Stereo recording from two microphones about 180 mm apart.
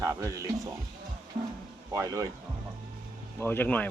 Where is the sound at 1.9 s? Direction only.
20° right (ahead or behind).